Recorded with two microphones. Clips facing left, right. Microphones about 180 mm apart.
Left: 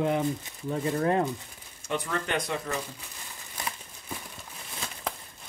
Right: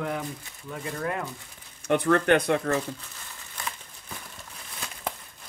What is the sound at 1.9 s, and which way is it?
Speech, 60° right (ahead or behind).